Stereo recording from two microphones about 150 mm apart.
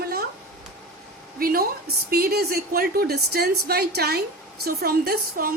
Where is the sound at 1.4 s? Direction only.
80° right.